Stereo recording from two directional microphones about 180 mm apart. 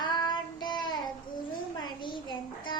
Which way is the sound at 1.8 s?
25° left (ahead or behind).